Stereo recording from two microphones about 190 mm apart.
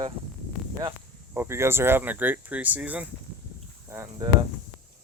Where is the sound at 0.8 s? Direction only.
10° right (ahead or behind).